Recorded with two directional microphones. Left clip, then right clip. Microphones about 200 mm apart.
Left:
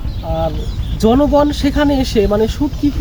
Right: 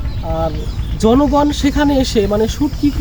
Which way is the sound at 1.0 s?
10° left (ahead or behind).